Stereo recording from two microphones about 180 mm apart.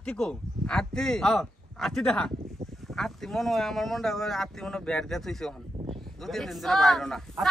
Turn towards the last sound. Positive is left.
turn(degrees=0)  # may be behind; listen again after turning